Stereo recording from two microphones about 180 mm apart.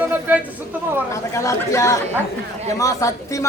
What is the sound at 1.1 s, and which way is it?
Speech, 15° left (ahead or behind).